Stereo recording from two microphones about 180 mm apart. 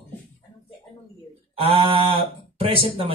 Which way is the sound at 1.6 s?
30° right (ahead or behind).